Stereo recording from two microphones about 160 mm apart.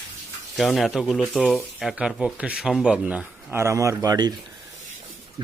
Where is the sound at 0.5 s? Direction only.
Centre (ahead or behind); by 4.4 s 25° right (ahead or behind).